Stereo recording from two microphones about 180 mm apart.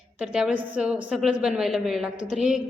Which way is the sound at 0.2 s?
5° right (ahead or behind).